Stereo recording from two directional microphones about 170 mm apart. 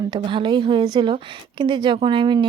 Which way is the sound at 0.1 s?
30° right (ahead or behind).